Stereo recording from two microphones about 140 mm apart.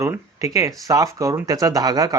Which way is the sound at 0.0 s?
20° right (ahead or behind).